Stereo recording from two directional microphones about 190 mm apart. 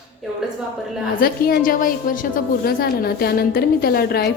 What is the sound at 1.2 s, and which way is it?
A woman's voice, 50° left (ahead or behind).